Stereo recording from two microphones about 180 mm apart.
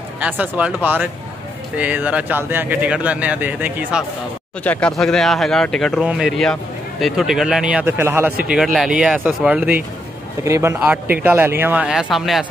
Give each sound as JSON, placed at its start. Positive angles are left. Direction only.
{"t": 0.2, "sound": "speech", "side_deg": -5}
{"t": 1.8, "sound": "speech", "side_deg": -10}
{"t": 4.6, "sound": "speech", "side_deg": 5}